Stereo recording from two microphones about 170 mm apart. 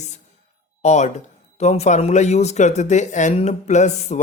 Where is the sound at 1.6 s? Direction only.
40° left (ahead or behind).